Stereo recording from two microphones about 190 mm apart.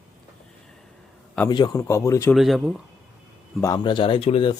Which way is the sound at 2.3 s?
Centre (ahead or behind).